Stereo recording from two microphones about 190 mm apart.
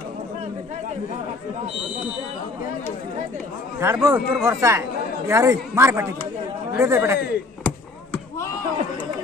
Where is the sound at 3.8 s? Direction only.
10° right (ahead or behind).